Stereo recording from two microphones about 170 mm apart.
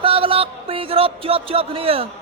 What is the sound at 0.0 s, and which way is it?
Music, 30° right (ahead or behind).